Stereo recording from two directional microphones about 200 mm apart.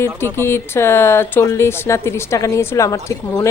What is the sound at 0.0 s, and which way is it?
A woman's voice, 10° left (ahead or behind).